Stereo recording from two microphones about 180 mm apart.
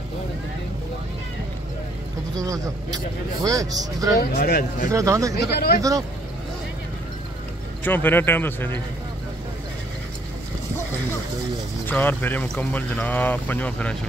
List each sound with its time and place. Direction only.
2.3 s speech: 20° right (ahead or behind)
4.2 s speech: 55° left (ahead or behind)
4.9 s speech: 15° right (ahead or behind)
7.8 s speech: 10° left (ahead or behind)
11.8 s speech: 10° left (ahead or behind)